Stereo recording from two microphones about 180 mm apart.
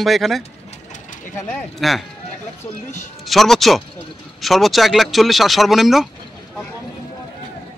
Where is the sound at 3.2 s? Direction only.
Centre (ahead or behind).